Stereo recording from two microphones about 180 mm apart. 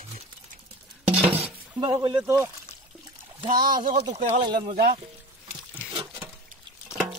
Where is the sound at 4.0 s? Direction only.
25° right (ahead or behind).